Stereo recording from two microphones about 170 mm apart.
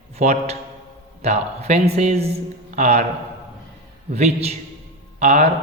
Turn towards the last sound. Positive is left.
turn(degrees=-45)  # may be behind; listen again after turning